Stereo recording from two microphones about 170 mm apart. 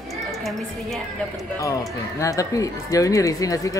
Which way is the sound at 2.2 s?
20° left (ahead or behind).